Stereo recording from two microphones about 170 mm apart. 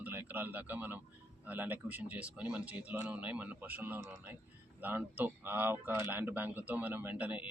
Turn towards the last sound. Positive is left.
turn(degrees=-10)  # may be behind; listen again after turning